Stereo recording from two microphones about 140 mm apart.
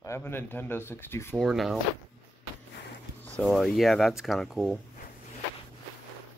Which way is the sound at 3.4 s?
Centre (ahead or behind).